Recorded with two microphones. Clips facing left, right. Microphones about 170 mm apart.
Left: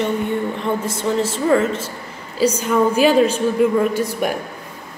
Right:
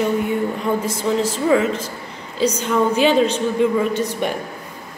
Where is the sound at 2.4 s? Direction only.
10° left (ahead or behind).